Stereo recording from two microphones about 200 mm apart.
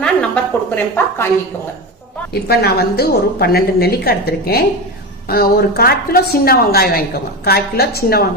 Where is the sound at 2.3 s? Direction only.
50° left (ahead or behind).